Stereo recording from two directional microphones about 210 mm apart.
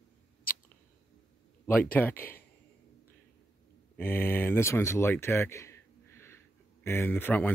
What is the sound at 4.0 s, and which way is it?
Speech, 10° left (ahead or behind).